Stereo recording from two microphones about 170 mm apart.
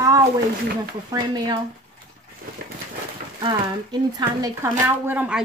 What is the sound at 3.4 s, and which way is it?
Speech, 25° right (ahead or behind).